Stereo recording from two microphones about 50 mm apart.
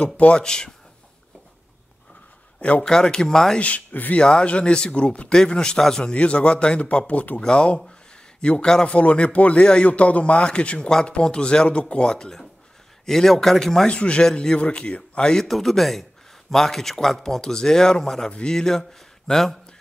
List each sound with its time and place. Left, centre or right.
0.0 s speech: left
2.8 s speech: centre
3.5 s speech: left
4.2 s speech: centre
6.1 s speech: left; by 13.8 s centre
13.8 s speech: left
15.4 s a man's voice: centre